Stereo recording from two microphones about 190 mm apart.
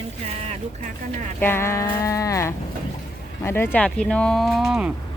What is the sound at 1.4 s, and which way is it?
Livestock, 15° left (ahead or behind).